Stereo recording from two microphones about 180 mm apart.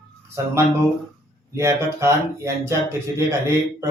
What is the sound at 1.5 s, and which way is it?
Speech, 15° right (ahead or behind).